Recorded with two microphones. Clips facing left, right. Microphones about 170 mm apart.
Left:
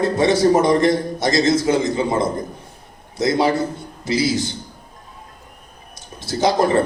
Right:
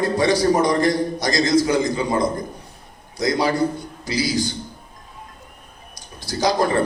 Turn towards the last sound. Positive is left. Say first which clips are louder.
# left 2 dB
turn(degrees=25)  # may be behind; listen again after turning